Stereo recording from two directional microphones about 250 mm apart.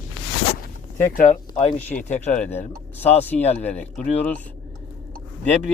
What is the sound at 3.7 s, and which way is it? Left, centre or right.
Speech, centre.